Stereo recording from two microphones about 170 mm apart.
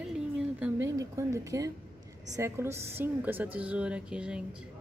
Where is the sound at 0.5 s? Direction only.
10° right (ahead or behind).